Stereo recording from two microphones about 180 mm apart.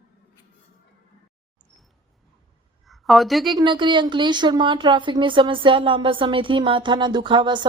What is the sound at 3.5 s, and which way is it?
A woman's voice, 25° right (ahead or behind).